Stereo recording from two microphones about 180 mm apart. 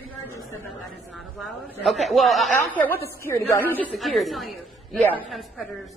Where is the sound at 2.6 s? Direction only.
10° left (ahead or behind).